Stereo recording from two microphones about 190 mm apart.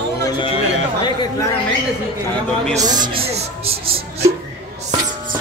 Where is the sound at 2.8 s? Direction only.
20° right (ahead or behind).